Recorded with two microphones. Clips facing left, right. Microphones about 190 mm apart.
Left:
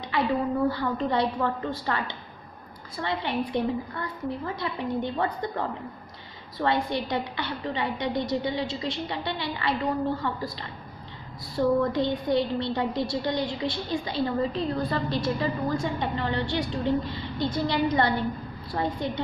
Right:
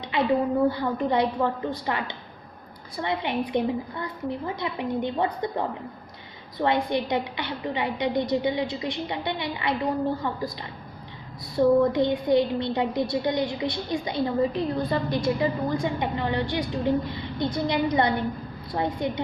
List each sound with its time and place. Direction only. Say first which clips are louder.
0.7 s a woman's voice: right 2 dB; 15° right (ahead or behind)
11.5 s a woman's voice: right 4 dB; 15° right (ahead or behind)